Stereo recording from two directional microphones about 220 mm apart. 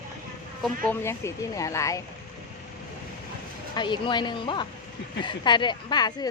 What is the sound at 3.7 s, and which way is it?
Speech, 20° left (ahead or behind).